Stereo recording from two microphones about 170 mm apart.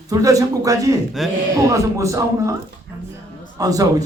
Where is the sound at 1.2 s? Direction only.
Centre (ahead or behind).